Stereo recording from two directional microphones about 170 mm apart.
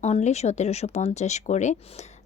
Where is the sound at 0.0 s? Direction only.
40° left (ahead or behind).